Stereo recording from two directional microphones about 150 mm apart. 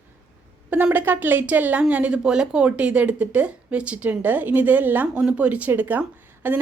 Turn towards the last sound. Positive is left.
turn(degrees=-10)  # may be behind; listen again after turning